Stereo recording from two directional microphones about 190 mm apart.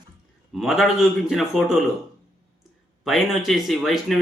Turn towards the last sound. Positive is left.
turn(degrees=0)  # may be behind; listen again after turning